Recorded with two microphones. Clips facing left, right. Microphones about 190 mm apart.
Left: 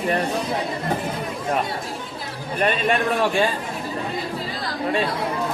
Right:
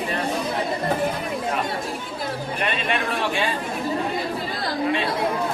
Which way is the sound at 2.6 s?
45° left (ahead or behind).